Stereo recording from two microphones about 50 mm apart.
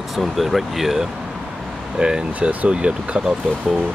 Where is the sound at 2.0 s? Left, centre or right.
Centre.